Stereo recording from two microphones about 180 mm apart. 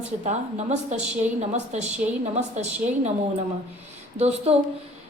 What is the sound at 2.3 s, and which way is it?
Speech, 40° right (ahead or behind).